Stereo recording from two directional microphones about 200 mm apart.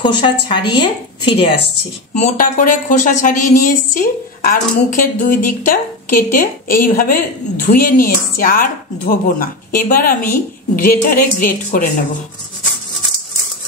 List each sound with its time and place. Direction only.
0.0 s a woman's voice: 25° left (ahead or behind)
2.1 s a woman's voice: 40° left (ahead or behind)